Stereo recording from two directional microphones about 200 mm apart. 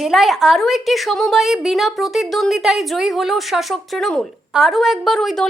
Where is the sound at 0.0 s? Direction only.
Centre (ahead or behind).